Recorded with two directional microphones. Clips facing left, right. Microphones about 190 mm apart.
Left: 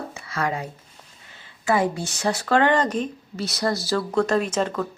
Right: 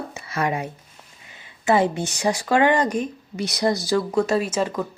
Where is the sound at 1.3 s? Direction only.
15° right (ahead or behind).